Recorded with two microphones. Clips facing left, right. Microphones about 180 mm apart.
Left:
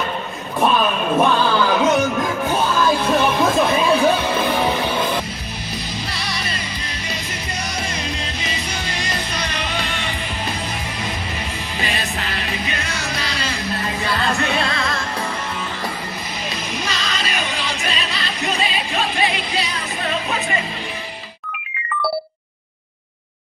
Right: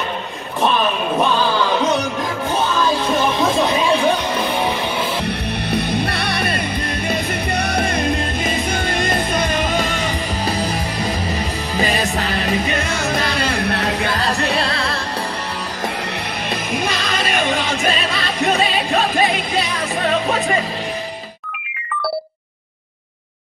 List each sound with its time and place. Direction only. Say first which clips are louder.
3.1 s music: even; centre (ahead or behind)
5.2 s music: right 8 dB; 60° right (ahead or behind); by 10.7 s 40° right (ahead or behind)
11.7 s music: right 7 dB; 40° right (ahead or behind); by 13.9 s 70° right (ahead or behind)
14.0 s music: right 1 dB; 40° right (ahead or behind)
14.3 s music: right 1 dB; centre (ahead or behind)
16.7 s music: right 6 dB; 55° right (ahead or behind)